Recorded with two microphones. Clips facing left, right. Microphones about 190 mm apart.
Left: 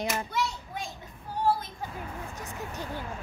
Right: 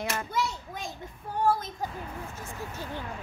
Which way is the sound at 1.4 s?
45° right (ahead or behind).